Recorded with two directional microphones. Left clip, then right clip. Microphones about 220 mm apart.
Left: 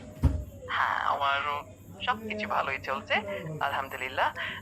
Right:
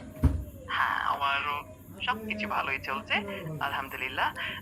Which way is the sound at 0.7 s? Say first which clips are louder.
Left 1 dB; centre (ahead or behind).